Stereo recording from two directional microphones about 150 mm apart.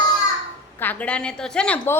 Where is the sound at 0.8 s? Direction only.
10° left (ahead or behind).